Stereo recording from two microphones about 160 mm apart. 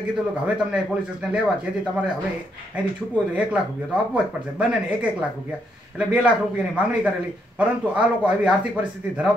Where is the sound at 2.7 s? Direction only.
10° right (ahead or behind).